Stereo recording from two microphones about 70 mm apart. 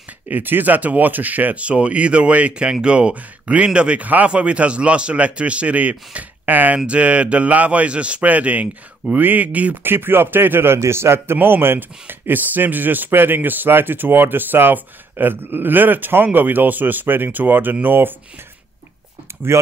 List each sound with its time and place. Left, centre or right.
0.3 s speech: right
19.5 s speech: right